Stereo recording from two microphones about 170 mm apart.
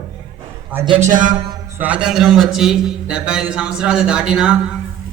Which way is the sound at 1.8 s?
5° right (ahead or behind).